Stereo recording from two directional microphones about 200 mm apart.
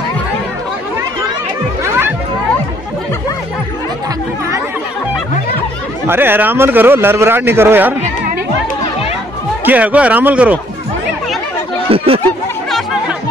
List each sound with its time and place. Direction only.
6.0 s a man's voice: 10° right (ahead or behind)
9.7 s a man's voice: 5° right (ahead or behind)
11.9 s speech: 30° right (ahead or behind)